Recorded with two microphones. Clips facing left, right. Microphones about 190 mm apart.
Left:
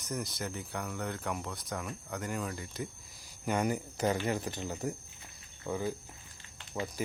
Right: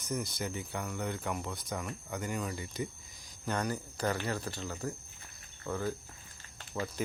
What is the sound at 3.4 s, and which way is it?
Speech, 15° left (ahead or behind).